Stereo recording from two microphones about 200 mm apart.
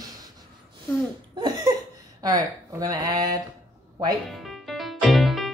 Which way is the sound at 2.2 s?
20° right (ahead or behind).